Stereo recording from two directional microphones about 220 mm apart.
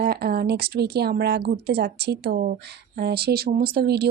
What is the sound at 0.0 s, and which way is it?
Speech, 45° right (ahead or behind).